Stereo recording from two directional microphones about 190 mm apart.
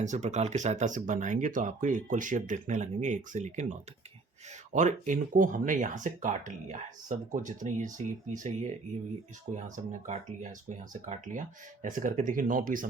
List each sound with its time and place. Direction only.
0.0 s speech: 40° right (ahead or behind)
9.6 s speech: 40° right (ahead or behind)